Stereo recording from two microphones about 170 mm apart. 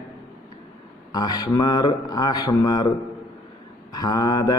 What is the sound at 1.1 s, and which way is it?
A man's voice, 25° left (ahead or behind).